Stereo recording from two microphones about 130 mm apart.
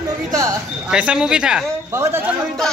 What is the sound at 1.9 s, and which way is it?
Speech, 20° right (ahead or behind).